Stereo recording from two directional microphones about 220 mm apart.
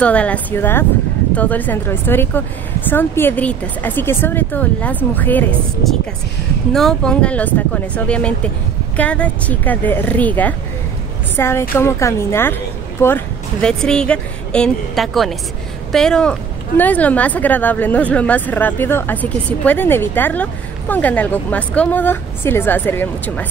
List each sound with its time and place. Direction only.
0.0 s speech: 5° left (ahead or behind)